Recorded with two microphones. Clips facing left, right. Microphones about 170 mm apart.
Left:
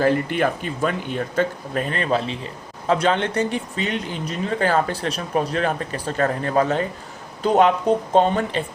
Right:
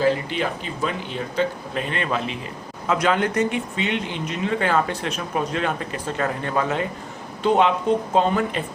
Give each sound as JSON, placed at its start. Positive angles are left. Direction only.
{"t": 0.0, "sound": "speech", "side_deg": 50}
{"t": 8.1, "sound": "speech", "side_deg": 30}